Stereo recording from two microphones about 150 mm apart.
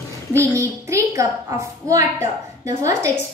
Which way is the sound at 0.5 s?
20° right (ahead or behind).